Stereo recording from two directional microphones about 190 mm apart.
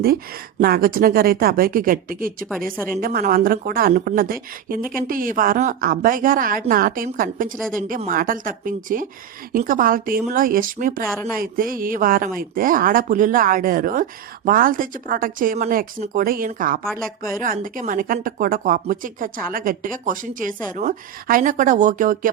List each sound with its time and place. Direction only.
0.6 s speech: 50° right (ahead or behind)